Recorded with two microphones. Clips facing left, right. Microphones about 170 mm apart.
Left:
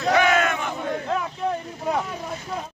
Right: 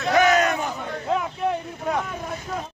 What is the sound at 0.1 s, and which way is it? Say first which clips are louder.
Battle cry: right 2 dB; 40° right (ahead or behind).